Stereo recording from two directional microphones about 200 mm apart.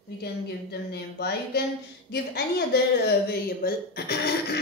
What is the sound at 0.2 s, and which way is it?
A woman's voice, 55° left (ahead or behind).